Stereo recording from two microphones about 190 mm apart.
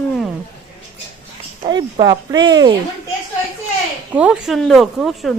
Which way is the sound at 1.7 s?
20° right (ahead or behind).